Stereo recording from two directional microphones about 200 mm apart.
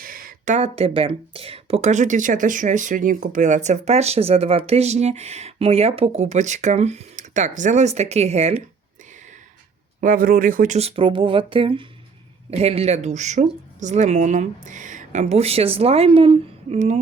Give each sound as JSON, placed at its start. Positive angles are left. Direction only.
{"t": 0.0, "sound": "speech", "side_deg": -45}
{"t": 10.0, "sound": "speech", "side_deg": -45}